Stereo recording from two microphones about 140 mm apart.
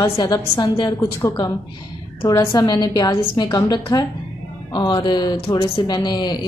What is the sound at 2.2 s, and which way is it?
A woman's voice, 30° left (ahead or behind).